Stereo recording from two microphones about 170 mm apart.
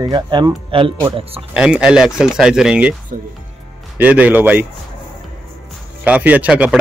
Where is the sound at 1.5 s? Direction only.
5° right (ahead or behind).